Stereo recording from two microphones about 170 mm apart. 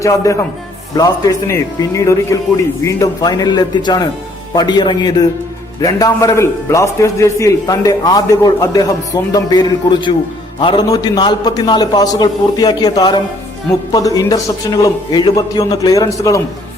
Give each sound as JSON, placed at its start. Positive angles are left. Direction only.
{"t": 0.0, "sound": "a man's voice", "side_deg": 20}